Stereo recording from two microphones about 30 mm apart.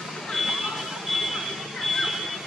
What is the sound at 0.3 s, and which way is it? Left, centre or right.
Vehicle, centre.